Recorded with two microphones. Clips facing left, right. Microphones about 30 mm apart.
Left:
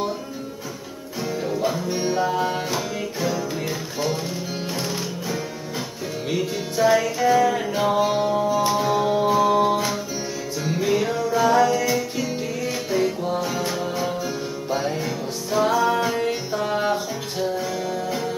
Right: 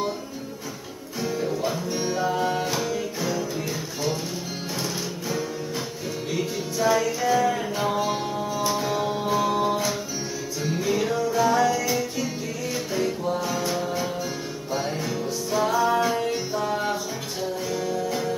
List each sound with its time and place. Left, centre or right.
1.2 s music: centre
6.3 s music: centre